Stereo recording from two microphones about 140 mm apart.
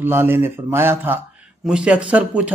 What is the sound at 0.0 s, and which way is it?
Speech, 15° right (ahead or behind).